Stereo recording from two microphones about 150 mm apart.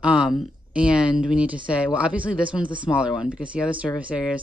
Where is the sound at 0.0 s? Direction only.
5° right (ahead or behind).